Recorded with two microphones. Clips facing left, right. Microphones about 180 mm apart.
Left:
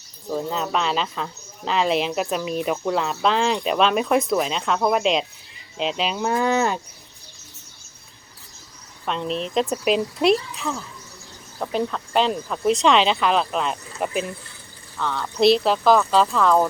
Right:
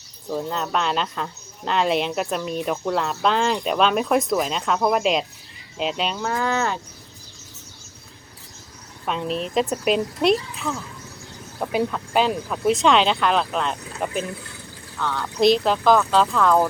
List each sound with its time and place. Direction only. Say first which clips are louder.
0.3 s speech: left 1 dB; centre (ahead or behind)
6.1 s livestock: left 6 dB; 15° left (ahead or behind)
9.0 s speech: even; 5° right (ahead or behind)